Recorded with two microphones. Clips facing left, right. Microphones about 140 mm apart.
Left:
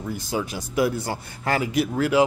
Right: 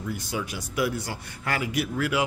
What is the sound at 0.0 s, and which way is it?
A man's voice, 30° left (ahead or behind).